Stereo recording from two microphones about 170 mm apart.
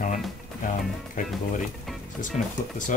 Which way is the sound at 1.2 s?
50° left (ahead or behind).